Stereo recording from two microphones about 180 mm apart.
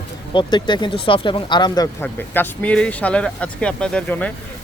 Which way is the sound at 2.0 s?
10° left (ahead or behind).